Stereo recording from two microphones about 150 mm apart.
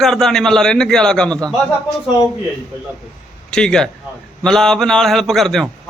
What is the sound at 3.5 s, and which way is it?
A man's voice, 5° left (ahead or behind).